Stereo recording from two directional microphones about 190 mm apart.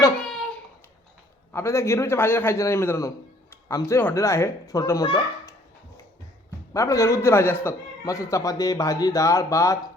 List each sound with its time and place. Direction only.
1.5 s a man's voice: 15° left (ahead or behind)
6.7 s a man's voice: 15° left (ahead or behind)